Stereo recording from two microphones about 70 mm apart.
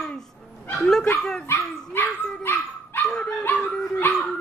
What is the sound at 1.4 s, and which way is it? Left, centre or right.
Dog, left.